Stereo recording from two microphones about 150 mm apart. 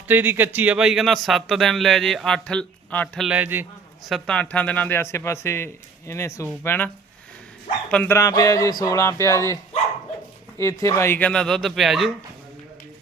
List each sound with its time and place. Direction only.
0.1 s speech: 10° right (ahead or behind); by 3.2 s 10° left (ahead or behind)
3.2 s a man's voice: 10° right (ahead or behind)
4.0 s a man's voice: 5° left (ahead or behind); by 9.6 s 20° left (ahead or behind)
10.6 s speech: 20° left (ahead or behind); by 12.1 s centre (ahead or behind)